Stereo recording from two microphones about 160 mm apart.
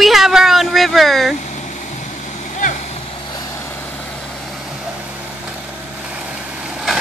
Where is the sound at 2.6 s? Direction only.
55° left (ahead or behind).